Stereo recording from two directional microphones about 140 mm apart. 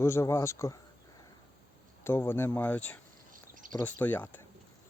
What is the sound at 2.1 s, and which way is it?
Speech, 15° left (ahead or behind).